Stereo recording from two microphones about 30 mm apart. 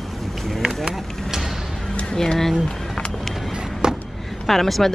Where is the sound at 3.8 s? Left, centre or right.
Right.